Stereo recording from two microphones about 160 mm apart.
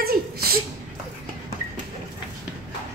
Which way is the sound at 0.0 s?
70° right (ahead or behind).